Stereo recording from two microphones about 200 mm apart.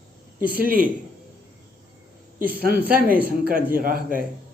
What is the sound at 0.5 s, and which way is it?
Speech, 45° right (ahead or behind).